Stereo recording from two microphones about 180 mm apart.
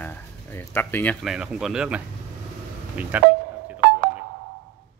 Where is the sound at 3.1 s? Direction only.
10° right (ahead or behind).